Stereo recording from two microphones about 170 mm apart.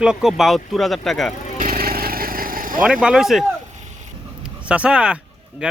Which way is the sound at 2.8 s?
5° right (ahead or behind).